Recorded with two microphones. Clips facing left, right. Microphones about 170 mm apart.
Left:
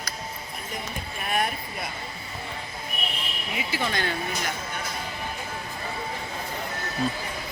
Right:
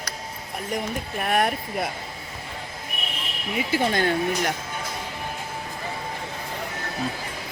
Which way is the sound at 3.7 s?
50° right (ahead or behind).